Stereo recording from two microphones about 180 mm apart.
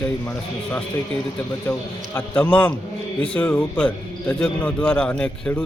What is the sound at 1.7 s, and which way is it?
A man's voice, 10° left (ahead or behind).